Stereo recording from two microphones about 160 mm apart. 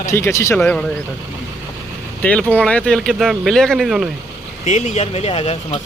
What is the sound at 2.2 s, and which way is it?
Speech, 10° left (ahead or behind).